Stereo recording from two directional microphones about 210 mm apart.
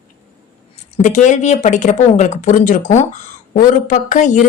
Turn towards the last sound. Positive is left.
turn(degrees=35)  # may be behind; listen again after turning